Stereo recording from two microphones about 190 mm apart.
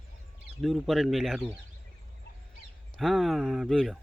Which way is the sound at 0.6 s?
Centre (ahead or behind).